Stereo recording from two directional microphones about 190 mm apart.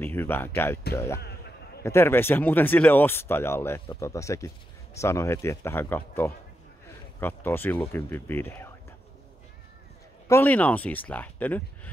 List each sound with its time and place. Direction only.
0.0 s speech: 10° left (ahead or behind)
10.2 s speech: 10° left (ahead or behind)